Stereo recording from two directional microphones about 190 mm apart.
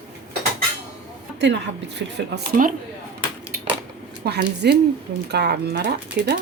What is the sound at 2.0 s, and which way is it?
Speech, 60° right (ahead or behind).